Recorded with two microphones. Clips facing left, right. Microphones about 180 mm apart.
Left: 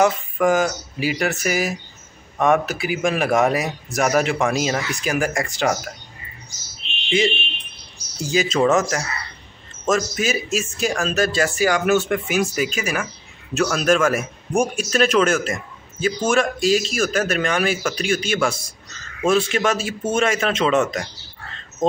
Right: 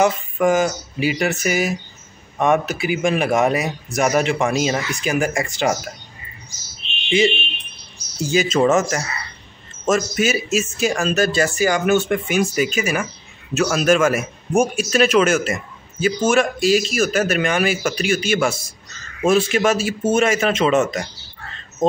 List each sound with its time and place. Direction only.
0.0 s speech: centre (ahead or behind)
7.1 s speech: centre (ahead or behind)